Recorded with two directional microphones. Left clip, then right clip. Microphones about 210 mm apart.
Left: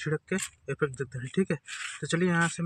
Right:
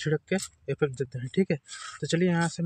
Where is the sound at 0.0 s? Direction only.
25° right (ahead or behind).